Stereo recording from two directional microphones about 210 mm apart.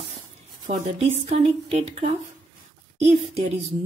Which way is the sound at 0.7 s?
35° right (ahead or behind).